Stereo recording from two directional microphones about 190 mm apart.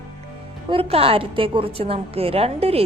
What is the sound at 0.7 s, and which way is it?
A woman's voice, 30° right (ahead or behind).